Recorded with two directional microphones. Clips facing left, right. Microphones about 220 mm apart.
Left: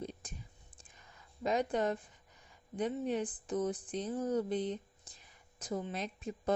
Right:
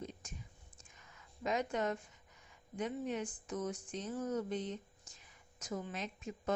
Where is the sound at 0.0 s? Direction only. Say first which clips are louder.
Left 3 dB; 35° left (ahead or behind).